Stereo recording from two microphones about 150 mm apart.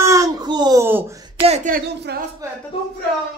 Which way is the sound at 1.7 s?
90° right.